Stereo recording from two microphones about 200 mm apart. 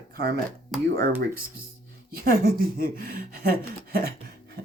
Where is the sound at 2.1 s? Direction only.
50° right (ahead or behind).